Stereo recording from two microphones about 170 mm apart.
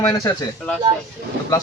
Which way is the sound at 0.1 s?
20° left (ahead or behind).